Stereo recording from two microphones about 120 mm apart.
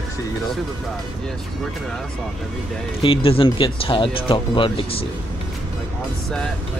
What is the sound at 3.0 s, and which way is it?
Speech, 50° left (ahead or behind).